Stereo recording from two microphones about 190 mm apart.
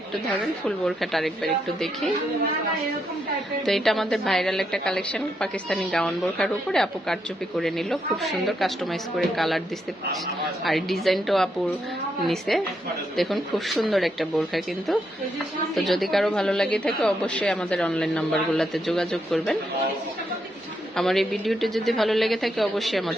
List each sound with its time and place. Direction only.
0.6 s a woman's voice: centre (ahead or behind)
3.7 s a woman's voice: centre (ahead or behind)
20.9 s a woman's voice: centre (ahead or behind)